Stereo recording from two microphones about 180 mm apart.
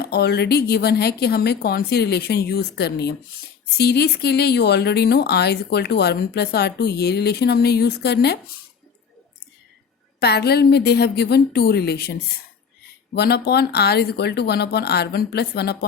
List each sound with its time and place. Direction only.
0.0 s speech: 65° left (ahead or behind)
10.2 s speech: 65° left (ahead or behind)
13.1 s speech: 65° left (ahead or behind)